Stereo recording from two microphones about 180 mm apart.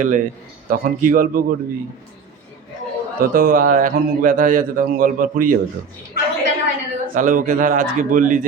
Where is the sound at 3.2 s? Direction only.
50° right (ahead or behind).